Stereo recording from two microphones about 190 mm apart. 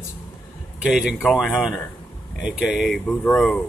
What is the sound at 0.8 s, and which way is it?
Speech, 5° right (ahead or behind).